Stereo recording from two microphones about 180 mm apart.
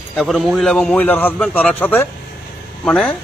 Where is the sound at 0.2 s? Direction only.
Centre (ahead or behind).